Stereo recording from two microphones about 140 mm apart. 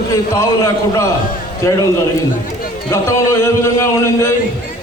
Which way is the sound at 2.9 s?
20° left (ahead or behind).